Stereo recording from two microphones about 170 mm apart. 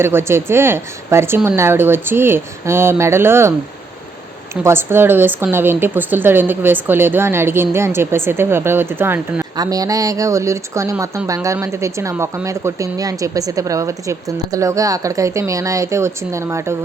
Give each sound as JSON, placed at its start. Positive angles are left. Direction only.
{"t": 0.0, "sound": "a woman's voice", "side_deg": -15}
{"t": 4.6, "sound": "a woman's voice", "side_deg": -15}